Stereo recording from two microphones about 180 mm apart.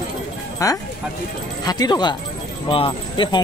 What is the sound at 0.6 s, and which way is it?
Speech, 20° left (ahead or behind).